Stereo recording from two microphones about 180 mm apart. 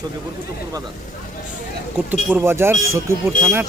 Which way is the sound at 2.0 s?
10° right (ahead or behind).